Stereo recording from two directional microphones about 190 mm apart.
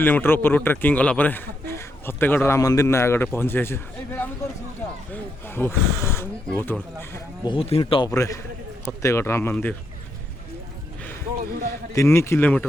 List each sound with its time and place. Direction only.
0.0 s a man's voice: 10° left (ahead or behind)
4.8 s a sound: 15° left (ahead or behind)
5.1 s a man's voice: 10° left (ahead or behind)
7.4 s a man's voice: 30° left (ahead or behind); by 9.7 s 10° left (ahead or behind)
11.9 s a man's voice: 15° left (ahead or behind)